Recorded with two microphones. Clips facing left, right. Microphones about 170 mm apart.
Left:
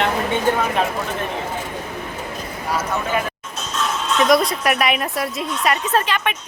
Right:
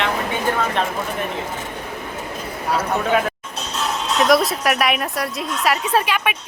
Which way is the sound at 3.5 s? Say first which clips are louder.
Left 3 dB; 35° right (ahead or behind).